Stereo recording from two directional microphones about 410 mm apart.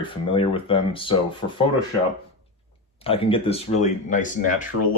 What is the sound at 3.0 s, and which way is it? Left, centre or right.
Speech, centre.